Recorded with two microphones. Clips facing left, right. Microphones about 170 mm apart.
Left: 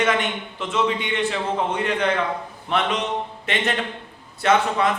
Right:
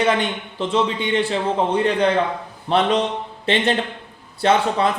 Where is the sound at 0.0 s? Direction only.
30° right (ahead or behind).